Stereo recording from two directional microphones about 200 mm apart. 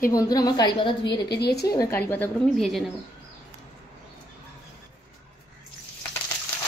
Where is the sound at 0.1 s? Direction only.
20° left (ahead or behind).